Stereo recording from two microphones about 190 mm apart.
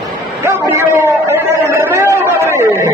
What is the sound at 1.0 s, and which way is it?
Chatter, 15° right (ahead or behind).